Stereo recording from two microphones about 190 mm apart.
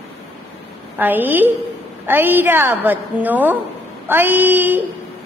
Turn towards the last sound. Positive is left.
turn(degrees=-10)  # may be behind; listen again after turning